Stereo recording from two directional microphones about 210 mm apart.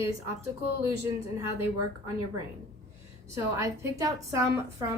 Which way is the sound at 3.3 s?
15° right (ahead or behind).